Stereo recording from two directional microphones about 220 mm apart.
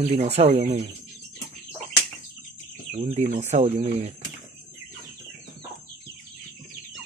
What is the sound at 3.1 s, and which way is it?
Speech, 30° right (ahead or behind).